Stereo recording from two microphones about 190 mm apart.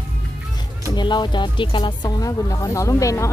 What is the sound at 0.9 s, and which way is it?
Speech, 25° left (ahead or behind).